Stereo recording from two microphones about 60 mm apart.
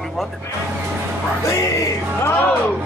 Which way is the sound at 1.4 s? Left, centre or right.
Left.